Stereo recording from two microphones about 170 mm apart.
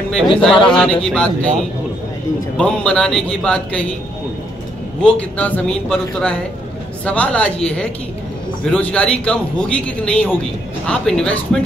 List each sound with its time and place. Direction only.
0.1 s speech: 5° left (ahead or behind)
2.5 s speech: 5° left (ahead or behind)
5.4 s a man's voice: 5° left (ahead or behind)